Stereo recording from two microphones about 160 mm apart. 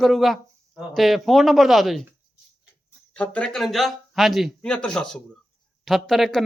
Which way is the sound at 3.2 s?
5° left (ahead or behind).